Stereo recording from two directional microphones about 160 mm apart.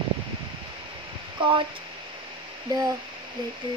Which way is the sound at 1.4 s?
30° right (ahead or behind).